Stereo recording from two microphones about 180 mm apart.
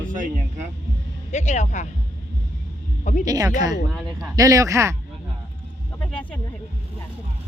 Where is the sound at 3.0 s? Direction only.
40° left (ahead or behind).